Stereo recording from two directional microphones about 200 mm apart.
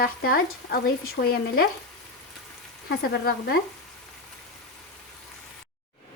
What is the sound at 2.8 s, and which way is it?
Speech, 50° left (ahead or behind).